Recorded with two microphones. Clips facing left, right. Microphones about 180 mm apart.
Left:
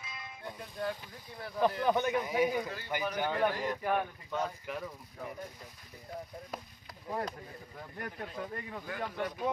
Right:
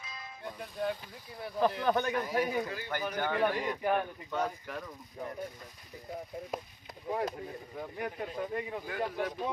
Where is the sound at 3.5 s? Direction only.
15° right (ahead or behind).